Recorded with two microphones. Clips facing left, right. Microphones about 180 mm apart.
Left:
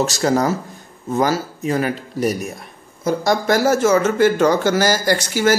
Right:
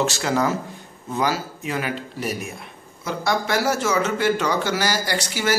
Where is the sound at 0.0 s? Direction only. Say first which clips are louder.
Left 4 dB; 40° left (ahead or behind).